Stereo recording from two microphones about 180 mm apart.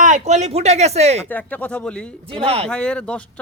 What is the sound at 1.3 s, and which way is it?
Speech, 10° left (ahead or behind).